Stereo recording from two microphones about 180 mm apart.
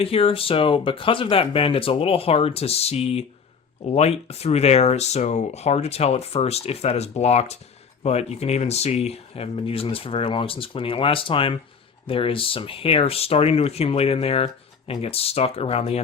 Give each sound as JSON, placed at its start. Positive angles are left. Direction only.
{"t": 0.0, "sound": "speech", "side_deg": 30}